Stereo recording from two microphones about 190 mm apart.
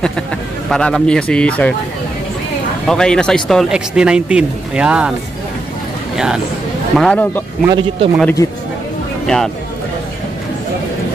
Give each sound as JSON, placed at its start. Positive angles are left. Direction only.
{"t": 0.7, "sound": "speech", "side_deg": 5}
{"t": 2.9, "sound": "speech", "side_deg": 5}
{"t": 6.1, "sound": "speech", "side_deg": -5}
{"t": 7.6, "sound": "speech", "side_deg": -25}
{"t": 8.4, "sound": "speech", "side_deg": 20}
{"t": 9.2, "sound": "speech", "side_deg": 5}